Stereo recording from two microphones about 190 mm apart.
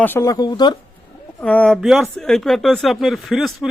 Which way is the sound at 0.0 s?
15° left (ahead or behind).